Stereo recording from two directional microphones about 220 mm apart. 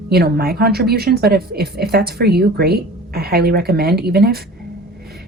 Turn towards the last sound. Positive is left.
turn(degrees=-45)  # may be behind; listen again after turning